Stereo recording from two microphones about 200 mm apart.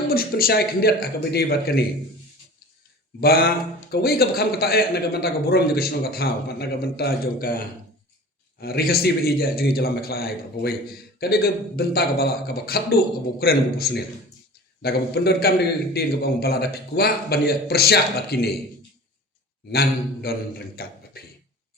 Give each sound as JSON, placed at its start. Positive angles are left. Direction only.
{"t": 0.1, "sound": "a man's voice", "side_deg": 50}
{"t": 3.2, "sound": "a man's voice", "side_deg": 50}
{"t": 8.6, "sound": "a man's voice", "side_deg": 50}
{"t": 19.7, "sound": "a man's voice", "side_deg": 50}